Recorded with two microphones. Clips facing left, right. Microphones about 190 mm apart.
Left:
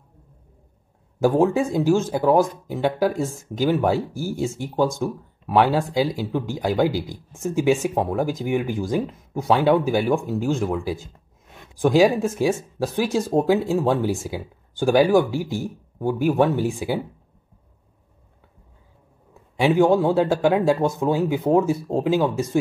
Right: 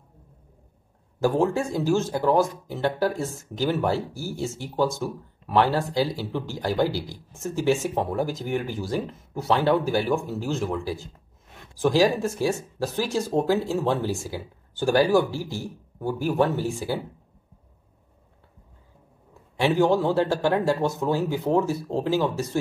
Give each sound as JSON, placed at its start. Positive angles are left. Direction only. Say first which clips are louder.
{"t": 1.2, "sound": "speech", "louder": "left 4 dB", "side_deg": 20}
{"t": 19.6, "sound": "speech", "louder": "left 4 dB", "side_deg": 15}
{"t": 19.9, "sound": "speech", "louder": "left 4 dB", "side_deg": 0}
{"t": 20.2, "sound": "speech", "louder": "left 4 dB", "side_deg": 15}